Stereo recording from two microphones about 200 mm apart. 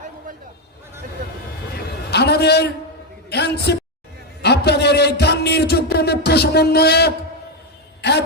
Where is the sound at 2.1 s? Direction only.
55° left (ahead or behind).